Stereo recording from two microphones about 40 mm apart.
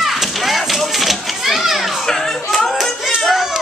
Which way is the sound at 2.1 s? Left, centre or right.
Centre.